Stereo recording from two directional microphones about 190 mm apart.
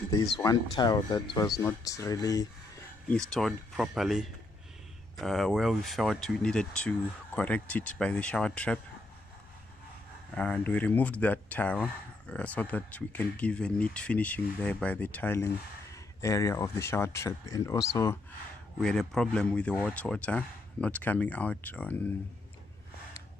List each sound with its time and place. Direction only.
0.1 s speech: 20° left (ahead or behind)
3.1 s speech: 5° left (ahead or behind)
10.3 s speech: 5° left (ahead or behind)
18.8 s speech: 5° left (ahead or behind)